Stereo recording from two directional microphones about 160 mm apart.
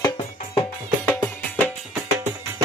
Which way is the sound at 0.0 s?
35° left (ahead or behind).